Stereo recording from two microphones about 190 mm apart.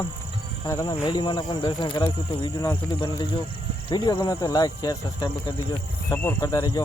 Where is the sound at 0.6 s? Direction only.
20° left (ahead or behind).